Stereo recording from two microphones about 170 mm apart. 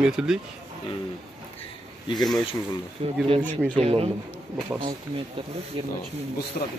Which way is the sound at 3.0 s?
35° right (ahead or behind).